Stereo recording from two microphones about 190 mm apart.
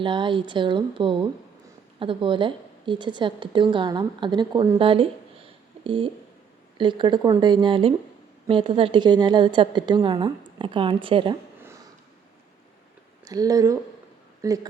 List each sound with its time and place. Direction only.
0.0 s a woman's voice: 25° right (ahead or behind)
13.2 s a woman's voice: 20° right (ahead or behind)